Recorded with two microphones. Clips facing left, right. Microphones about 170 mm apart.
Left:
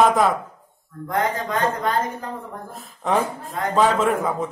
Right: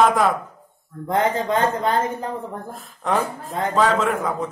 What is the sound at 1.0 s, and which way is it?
Speech, 25° right (ahead or behind).